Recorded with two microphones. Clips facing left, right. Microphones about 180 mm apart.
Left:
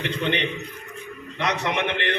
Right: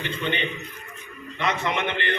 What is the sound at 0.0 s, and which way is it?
A man's voice, 70° left (ahead or behind).